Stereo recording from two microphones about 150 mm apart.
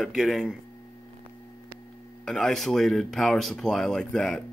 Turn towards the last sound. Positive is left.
turn(degrees=5)  # may be behind; listen again after turning